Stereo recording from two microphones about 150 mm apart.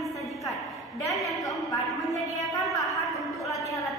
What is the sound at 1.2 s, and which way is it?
Speech, centre (ahead or behind).